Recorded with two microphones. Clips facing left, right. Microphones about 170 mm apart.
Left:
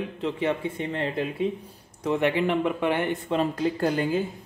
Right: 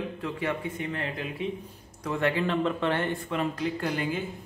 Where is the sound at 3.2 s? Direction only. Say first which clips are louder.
Left 4 dB; 35° left (ahead or behind).